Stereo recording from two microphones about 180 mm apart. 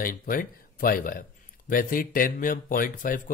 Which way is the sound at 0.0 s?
50° left (ahead or behind).